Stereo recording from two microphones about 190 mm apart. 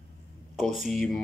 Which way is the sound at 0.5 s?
Centre (ahead or behind).